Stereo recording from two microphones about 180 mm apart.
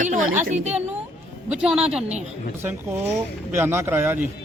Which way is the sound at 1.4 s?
5° right (ahead or behind).